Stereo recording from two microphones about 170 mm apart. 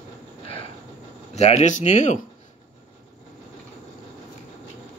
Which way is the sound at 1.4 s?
40° left (ahead or behind).